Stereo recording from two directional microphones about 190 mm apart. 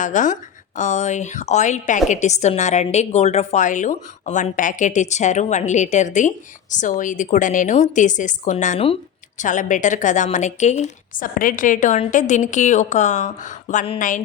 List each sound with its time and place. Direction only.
0.0 s a woman's voice: 40° left (ahead or behind)